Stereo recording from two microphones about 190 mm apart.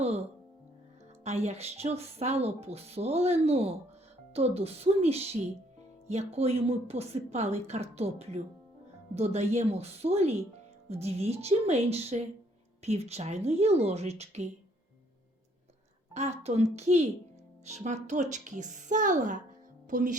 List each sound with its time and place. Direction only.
1.2 s speech: 35° right (ahead or behind)
16.1 s speech: 35° right (ahead or behind)